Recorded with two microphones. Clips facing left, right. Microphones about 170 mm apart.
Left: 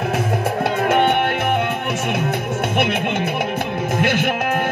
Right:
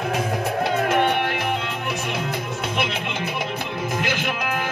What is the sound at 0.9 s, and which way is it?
Music, 60° left (ahead or behind).